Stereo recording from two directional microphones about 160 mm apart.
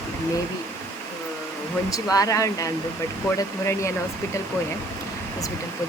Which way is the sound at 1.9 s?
20° left (ahead or behind).